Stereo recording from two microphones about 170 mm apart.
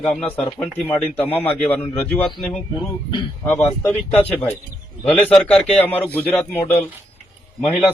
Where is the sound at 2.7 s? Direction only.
25° left (ahead or behind).